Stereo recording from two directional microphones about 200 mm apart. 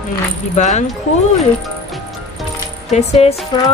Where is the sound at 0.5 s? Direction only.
35° left (ahead or behind).